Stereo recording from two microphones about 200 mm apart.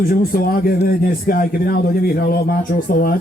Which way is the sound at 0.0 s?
45° left (ahead or behind).